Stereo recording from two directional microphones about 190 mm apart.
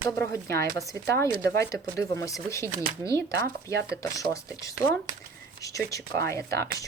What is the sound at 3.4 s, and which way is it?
Speech, 60° right (ahead or behind).